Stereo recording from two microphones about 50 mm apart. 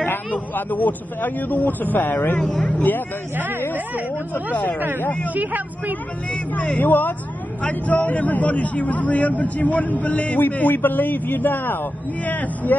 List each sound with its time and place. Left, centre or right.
0.3 s a man's voice: left
5.3 s speech: right
6.8 s a man's voice: left
12.3 s a man's voice: left